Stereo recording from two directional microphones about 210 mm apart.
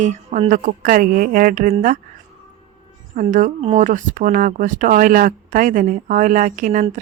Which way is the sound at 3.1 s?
35° right (ahead or behind).